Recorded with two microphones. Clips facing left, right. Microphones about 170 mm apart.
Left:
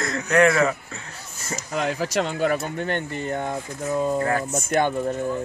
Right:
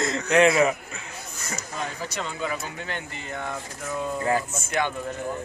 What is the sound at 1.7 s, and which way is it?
Speech, 85° left.